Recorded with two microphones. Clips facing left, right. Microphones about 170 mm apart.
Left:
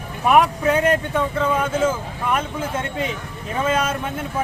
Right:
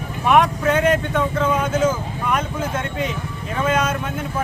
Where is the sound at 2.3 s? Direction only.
10° left (ahead or behind).